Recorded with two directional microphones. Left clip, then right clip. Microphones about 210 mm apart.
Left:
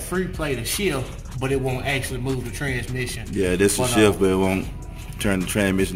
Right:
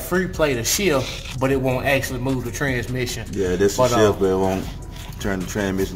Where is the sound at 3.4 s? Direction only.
20° left (ahead or behind).